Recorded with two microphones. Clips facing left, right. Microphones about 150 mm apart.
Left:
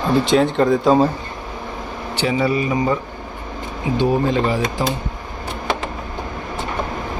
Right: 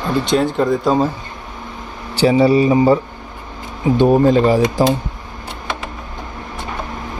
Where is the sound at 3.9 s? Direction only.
45° right (ahead or behind).